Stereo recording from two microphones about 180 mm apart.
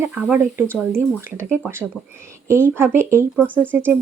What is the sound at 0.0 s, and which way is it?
Speech, 10° right (ahead or behind).